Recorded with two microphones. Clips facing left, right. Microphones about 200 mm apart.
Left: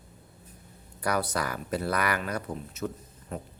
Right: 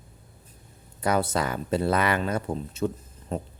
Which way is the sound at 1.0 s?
25° right (ahead or behind).